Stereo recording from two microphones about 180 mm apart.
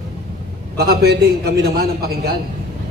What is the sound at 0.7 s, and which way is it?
A man's voice, 60° right (ahead or behind).